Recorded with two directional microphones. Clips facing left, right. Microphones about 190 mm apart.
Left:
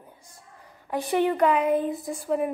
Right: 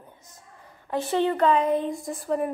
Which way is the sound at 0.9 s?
15° left (ahead or behind).